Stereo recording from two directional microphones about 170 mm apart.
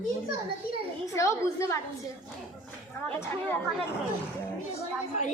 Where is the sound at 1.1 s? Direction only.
15° left (ahead or behind).